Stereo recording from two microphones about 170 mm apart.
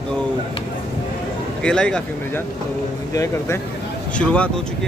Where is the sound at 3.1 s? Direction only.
20° left (ahead or behind).